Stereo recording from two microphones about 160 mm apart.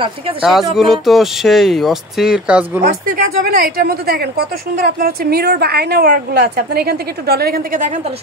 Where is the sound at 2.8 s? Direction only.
75° right (ahead or behind); by 8.0 s 50° right (ahead or behind).